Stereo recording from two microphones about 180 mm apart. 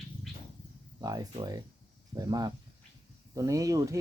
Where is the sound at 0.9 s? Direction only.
20° right (ahead or behind).